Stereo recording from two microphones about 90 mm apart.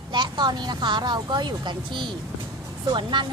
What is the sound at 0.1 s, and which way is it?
Speech, 60° right (ahead or behind).